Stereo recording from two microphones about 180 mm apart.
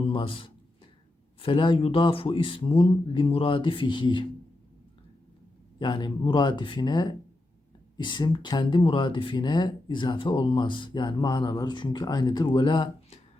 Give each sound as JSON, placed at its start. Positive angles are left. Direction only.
{"t": 0.0, "sound": "speech", "side_deg": 30}
{"t": 5.8, "sound": "speech", "side_deg": 25}